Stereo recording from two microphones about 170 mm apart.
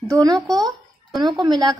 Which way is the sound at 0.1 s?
20° right (ahead or behind).